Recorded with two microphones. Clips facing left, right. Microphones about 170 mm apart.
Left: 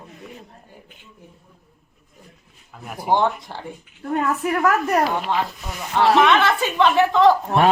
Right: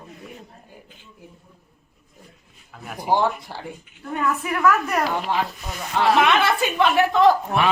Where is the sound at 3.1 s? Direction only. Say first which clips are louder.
Left 1 dB; 5° right (ahead or behind).